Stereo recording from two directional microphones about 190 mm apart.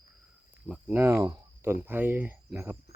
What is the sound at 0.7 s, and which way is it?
Speech, 10° right (ahead or behind).